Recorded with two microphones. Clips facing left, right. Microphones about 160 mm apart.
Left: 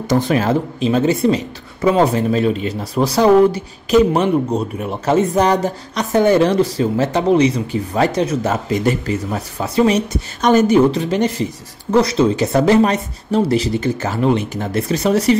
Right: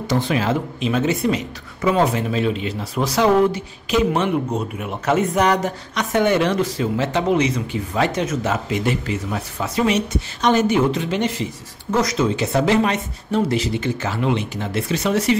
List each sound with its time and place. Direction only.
0.0 s speech: 45° left (ahead or behind)